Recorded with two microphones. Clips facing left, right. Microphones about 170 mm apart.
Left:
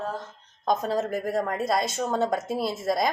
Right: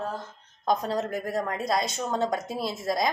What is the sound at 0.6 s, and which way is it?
A woman's voice, centre (ahead or behind).